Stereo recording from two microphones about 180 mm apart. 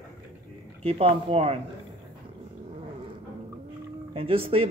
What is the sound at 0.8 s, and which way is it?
Speech, 30° right (ahead or behind).